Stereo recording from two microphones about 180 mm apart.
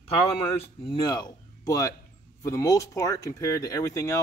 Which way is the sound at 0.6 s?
30° left (ahead or behind).